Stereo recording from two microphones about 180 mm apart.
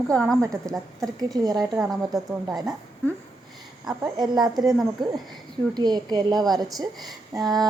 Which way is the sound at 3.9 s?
25° right (ahead or behind).